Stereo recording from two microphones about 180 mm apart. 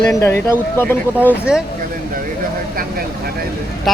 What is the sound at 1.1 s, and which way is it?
Speech, 10° right (ahead or behind).